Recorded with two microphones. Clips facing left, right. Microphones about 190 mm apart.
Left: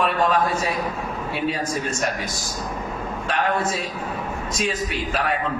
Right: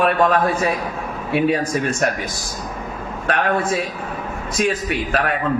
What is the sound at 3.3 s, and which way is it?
A man's voice, 55° right (ahead or behind).